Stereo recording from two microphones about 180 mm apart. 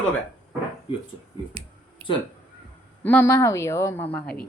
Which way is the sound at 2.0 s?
30° right (ahead or behind).